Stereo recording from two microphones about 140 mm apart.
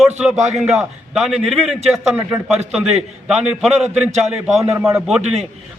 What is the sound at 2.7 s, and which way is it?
A man's voice, 5° right (ahead or behind).